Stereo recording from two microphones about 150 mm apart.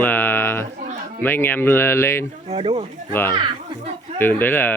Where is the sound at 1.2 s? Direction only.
15° left (ahead or behind).